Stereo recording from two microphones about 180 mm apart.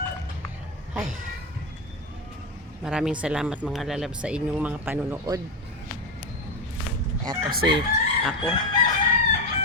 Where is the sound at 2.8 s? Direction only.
5° right (ahead or behind).